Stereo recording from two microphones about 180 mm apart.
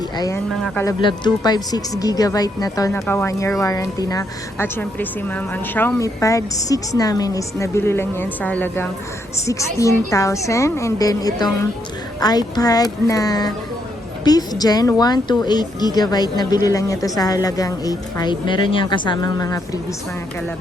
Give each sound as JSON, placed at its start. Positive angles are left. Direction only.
{"t": 0.9, "sound": "a woman's voice", "side_deg": 25}